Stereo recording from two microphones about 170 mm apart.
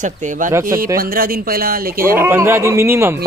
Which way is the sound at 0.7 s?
60° right (ahead or behind).